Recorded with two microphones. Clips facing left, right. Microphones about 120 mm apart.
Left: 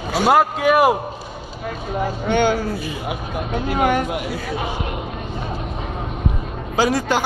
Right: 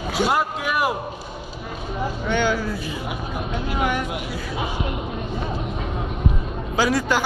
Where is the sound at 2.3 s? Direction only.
60° left (ahead or behind).